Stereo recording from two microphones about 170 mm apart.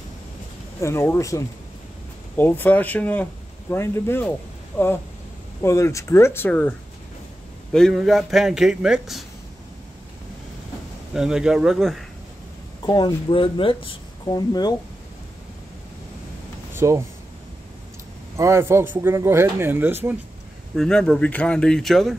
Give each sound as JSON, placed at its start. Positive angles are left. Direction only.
{"t": 0.7, "sound": "speech", "side_deg": 15}
{"t": 5.6, "sound": "speech", "side_deg": 15}
{"t": 7.7, "sound": "a man's voice", "side_deg": 0}
{"t": 11.1, "sound": "a man's voice", "side_deg": -5}
{"t": 12.8, "sound": "speech", "side_deg": 25}
{"t": 16.7, "sound": "speech", "side_deg": -15}
{"t": 18.3, "sound": "speech", "side_deg": -15}
{"t": 20.7, "sound": "a man's voice", "side_deg": 5}